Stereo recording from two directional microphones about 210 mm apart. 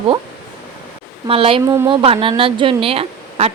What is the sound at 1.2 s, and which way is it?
A woman's voice, 25° right (ahead or behind).